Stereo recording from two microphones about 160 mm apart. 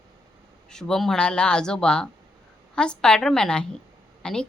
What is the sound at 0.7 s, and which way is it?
A woman's voice, 5° left (ahead or behind).